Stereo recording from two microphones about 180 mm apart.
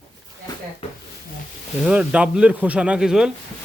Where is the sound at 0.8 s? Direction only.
35° left (ahead or behind).